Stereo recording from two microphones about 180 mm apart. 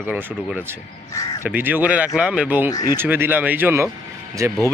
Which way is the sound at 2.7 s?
20° left (ahead or behind).